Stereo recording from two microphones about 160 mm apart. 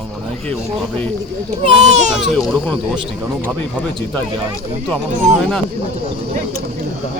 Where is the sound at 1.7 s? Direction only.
45° right (ahead or behind).